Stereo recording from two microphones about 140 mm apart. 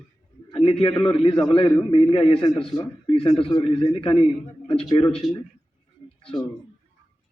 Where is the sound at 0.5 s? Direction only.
40° left (ahead or behind).